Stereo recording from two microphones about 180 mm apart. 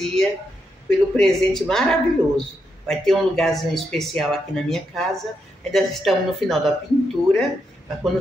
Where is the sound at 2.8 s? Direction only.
Centre (ahead or behind).